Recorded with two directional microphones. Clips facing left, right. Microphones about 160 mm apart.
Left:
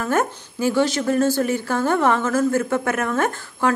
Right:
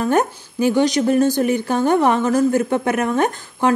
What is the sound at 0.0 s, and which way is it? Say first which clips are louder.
A woman's voice: right 4 dB; 20° right (ahead or behind).